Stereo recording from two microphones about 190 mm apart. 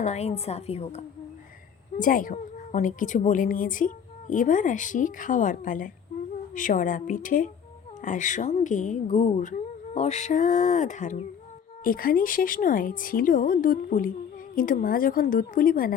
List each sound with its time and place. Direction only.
0.0 s speech: 35° left (ahead or behind)
2.0 s a woman's voice: 45° left (ahead or behind)